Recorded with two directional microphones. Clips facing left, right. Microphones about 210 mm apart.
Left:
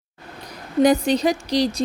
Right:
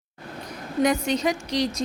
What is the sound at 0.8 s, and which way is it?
Speech, 35° left (ahead or behind).